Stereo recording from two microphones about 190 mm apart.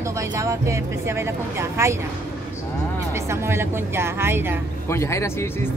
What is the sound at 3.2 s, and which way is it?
Speech, 15° right (ahead or behind).